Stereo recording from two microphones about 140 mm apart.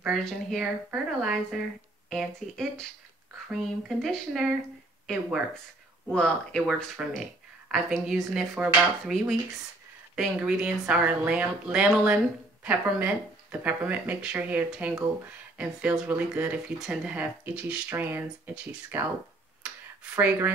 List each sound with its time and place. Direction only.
0.0 s speech: centre (ahead or behind)
20.2 s speech: 15° right (ahead or behind)